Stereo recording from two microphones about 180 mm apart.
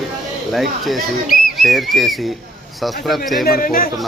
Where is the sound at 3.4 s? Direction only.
55° left (ahead or behind).